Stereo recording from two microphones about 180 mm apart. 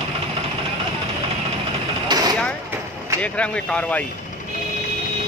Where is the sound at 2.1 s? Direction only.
20° right (ahead or behind).